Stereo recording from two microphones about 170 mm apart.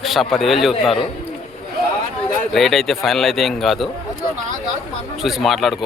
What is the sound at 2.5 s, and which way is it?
Speech, centre (ahead or behind).